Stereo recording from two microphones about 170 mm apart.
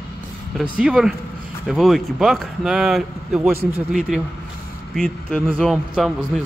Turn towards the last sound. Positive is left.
turn(degrees=0)  # may be behind; listen again after turning